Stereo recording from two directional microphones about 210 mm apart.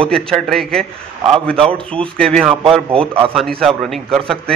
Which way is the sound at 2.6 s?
25° right (ahead or behind).